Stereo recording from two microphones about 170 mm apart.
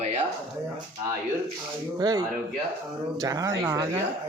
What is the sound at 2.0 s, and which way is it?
Speech, 25° right (ahead or behind).